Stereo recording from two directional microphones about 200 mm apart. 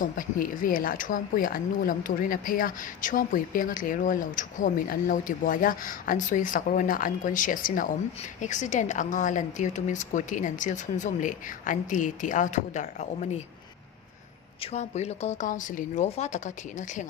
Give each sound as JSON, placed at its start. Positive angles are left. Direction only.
{"t": 0.0, "sound": "speech", "side_deg": 45}
{"t": 14.6, "sound": "speech", "side_deg": 35}